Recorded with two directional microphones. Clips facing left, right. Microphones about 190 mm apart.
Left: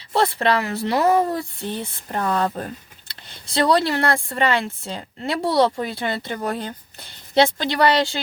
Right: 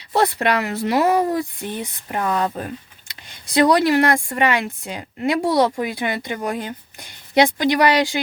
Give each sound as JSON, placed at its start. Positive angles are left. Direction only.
{"t": 0.1, "sound": "speech", "side_deg": -15}